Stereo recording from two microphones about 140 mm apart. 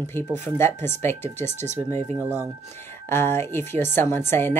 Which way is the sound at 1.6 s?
55° right (ahead or behind).